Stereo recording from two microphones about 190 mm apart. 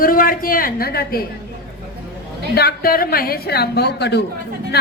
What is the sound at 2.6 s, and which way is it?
A woman's voice, 55° left (ahead or behind).